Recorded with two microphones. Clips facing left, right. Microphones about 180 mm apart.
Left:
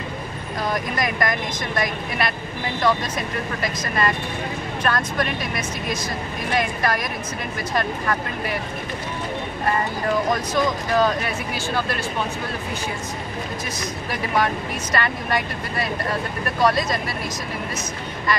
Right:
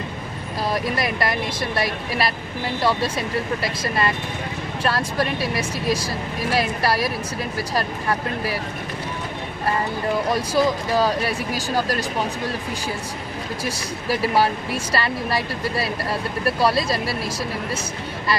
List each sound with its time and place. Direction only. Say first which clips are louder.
0.7 s speech: right 1 dB; 30° right (ahead or behind)
10.5 s speech: right 3 dB; 35° right (ahead or behind)
14.0 s speech: right 4 dB; 35° right (ahead or behind)